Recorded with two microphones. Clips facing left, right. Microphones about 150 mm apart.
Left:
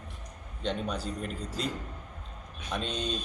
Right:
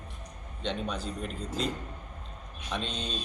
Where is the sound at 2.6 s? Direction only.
10° left (ahead or behind).